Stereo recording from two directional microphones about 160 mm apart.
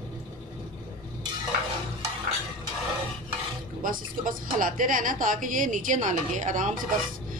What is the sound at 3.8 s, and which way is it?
A woman's voice, 60° right (ahead or behind).